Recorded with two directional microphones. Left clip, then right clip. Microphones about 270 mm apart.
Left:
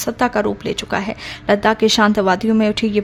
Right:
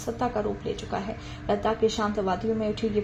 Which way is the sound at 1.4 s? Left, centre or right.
Left.